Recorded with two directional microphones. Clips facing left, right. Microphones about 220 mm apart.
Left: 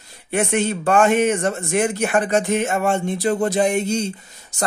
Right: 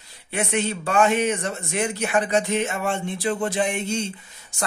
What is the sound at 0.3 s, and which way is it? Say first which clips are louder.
Speech: left 5 dB; 50° left (ahead or behind).